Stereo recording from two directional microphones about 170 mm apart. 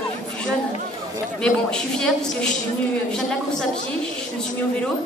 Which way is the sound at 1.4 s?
5° left (ahead or behind).